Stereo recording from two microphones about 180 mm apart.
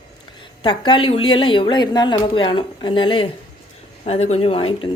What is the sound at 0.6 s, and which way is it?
A woman's voice, 25° left (ahead or behind).